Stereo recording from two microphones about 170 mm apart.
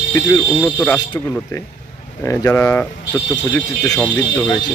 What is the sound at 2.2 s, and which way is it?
Speech, 15° left (ahead or behind).